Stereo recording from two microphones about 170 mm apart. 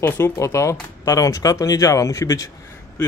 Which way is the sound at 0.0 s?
15° left (ahead or behind).